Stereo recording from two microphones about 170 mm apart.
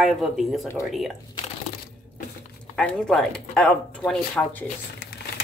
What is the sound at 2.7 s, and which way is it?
Speech, 5° left (ahead or behind).